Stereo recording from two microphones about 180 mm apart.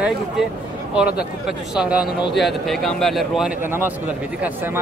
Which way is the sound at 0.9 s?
5° right (ahead or behind).